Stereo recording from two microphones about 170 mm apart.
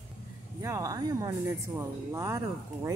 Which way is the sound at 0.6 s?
20° right (ahead or behind).